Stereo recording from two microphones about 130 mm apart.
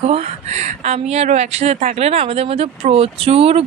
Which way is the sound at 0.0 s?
55° right (ahead or behind).